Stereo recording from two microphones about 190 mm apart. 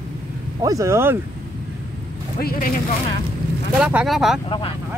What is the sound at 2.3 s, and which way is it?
Speech, 50° left (ahead or behind).